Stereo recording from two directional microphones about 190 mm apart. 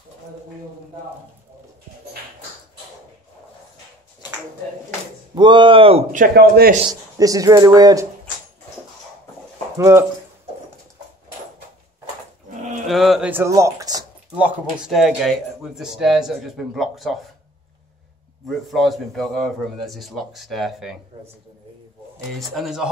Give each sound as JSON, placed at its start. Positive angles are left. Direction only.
{"t": 5.3, "sound": "speech", "side_deg": -25}
{"t": 6.1, "sound": "a man's voice", "side_deg": -55}
{"t": 6.9, "sound": "speech", "side_deg": -20}
{"t": 9.8, "sound": "speech", "side_deg": -15}
{"t": 12.8, "sound": "speech", "side_deg": 0}
{"t": 14.3, "sound": "speech", "side_deg": -5}
{"t": 18.7, "sound": "speech", "side_deg": 0}
{"t": 22.6, "sound": "speech", "side_deg": -5}